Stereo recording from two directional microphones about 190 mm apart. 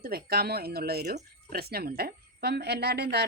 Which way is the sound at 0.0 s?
55° right (ahead or behind).